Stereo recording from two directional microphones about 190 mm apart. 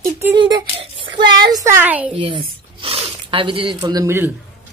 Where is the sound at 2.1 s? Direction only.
25° right (ahead or behind).